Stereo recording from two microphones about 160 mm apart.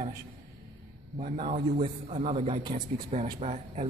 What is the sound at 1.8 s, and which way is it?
A man's voice, 35° right (ahead or behind).